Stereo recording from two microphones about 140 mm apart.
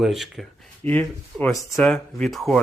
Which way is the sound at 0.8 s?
10° left (ahead or behind).